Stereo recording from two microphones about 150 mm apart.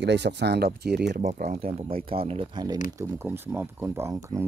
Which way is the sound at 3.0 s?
15° right (ahead or behind).